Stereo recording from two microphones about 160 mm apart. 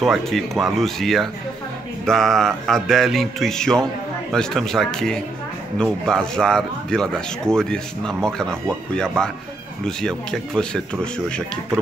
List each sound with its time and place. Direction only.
0.0 s speech: centre (ahead or behind)